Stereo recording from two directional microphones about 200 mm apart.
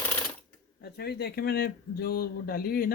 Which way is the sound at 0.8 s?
50° left (ahead or behind).